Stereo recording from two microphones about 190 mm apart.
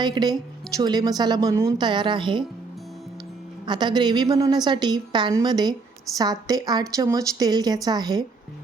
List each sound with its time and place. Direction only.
0.0 s a woman's voice: 20° right (ahead or behind)
3.7 s a woman's voice: 25° right (ahead or behind)